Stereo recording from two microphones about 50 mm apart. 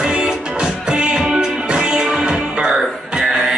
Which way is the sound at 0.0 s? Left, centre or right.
Centre.